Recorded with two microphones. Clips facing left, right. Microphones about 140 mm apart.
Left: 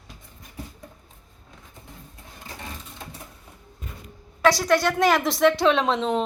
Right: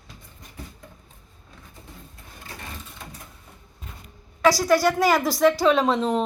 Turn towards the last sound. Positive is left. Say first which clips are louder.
# right 1 dB
turn(degrees=0)  # may be behind; listen again after turning